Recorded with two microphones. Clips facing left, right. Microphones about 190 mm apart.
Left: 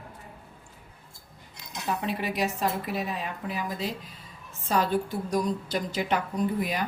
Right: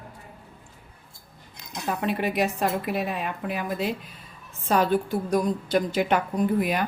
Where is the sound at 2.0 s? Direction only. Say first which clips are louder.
Right 6 dB; 55° right (ahead or behind).